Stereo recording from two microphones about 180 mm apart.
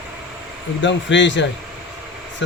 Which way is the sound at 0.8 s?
90° left.